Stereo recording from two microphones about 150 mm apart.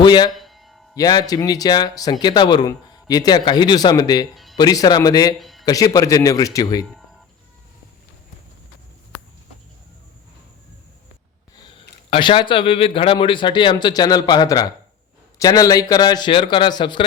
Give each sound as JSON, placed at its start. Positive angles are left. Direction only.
{"t": 0.0, "sound": "speech", "side_deg": 30}
{"t": 0.3, "sound": "music", "side_deg": 0}
{"t": 0.9, "sound": "speech", "side_deg": 25}
{"t": 5.4, "sound": "a sound", "side_deg": 0}
{"t": 5.6, "sound": "speech", "side_deg": 25}
{"t": 12.1, "sound": "speech", "side_deg": 35}